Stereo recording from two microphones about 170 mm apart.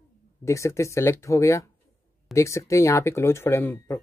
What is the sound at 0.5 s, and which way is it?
Speech, 15° left (ahead or behind).